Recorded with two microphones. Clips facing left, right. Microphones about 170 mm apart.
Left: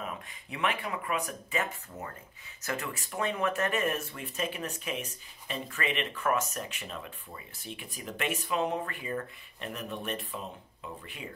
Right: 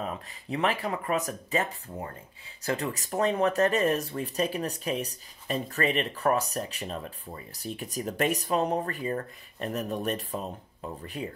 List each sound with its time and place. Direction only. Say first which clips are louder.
0.0 s speech: right 5 dB; 35° right (ahead or behind)